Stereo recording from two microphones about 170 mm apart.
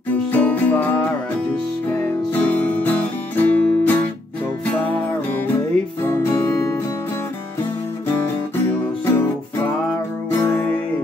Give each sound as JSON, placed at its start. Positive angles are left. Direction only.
{"t": 0.3, "sound": "music", "side_deg": 10}
{"t": 1.9, "sound": "music", "side_deg": 10}
{"t": 6.0, "sound": "music", "side_deg": 15}
{"t": 10.3, "sound": "music", "side_deg": 15}